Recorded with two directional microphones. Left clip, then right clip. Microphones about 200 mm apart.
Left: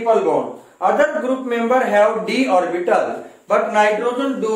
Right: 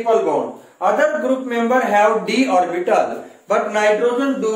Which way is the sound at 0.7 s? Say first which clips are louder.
Even; 10° left (ahead or behind).